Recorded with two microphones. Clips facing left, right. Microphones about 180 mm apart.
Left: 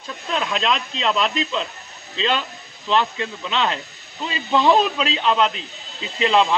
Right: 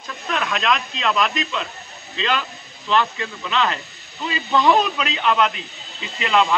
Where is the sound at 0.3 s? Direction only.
25° left (ahead or behind).